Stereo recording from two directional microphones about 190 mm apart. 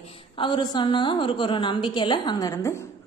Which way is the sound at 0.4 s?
25° left (ahead or behind).